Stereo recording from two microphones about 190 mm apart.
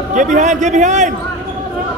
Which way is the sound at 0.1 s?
40° right (ahead or behind).